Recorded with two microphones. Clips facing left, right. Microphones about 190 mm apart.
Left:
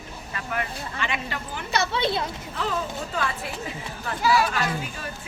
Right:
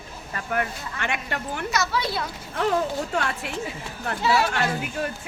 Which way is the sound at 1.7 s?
25° left (ahead or behind).